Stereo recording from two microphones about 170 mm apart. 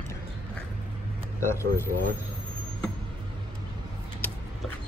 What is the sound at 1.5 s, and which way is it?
Speech, 15° left (ahead or behind).